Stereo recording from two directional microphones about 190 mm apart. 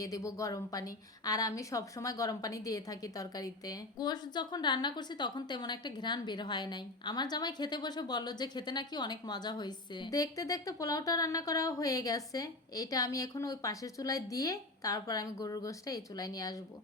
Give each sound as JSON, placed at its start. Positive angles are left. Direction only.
{"t": 0.0, "sound": "a woman's voice", "side_deg": 20}